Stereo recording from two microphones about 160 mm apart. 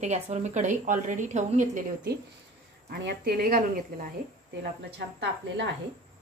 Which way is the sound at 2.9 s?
85° right.